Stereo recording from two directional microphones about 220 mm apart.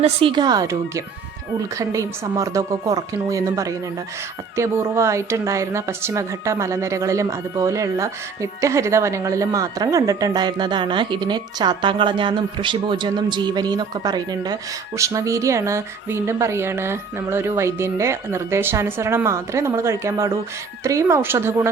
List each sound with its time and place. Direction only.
0.0 s speech: 25° right (ahead or behind)